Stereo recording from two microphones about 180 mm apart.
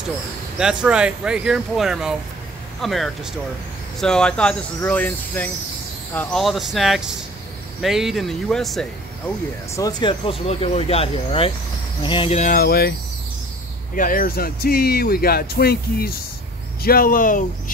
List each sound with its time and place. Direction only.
0.6 s speech: 5° right (ahead or behind)
9.8 s speech: 20° left (ahead or behind); by 12.9 s 60° left (ahead or behind)
13.9 s speech: 50° left (ahead or behind)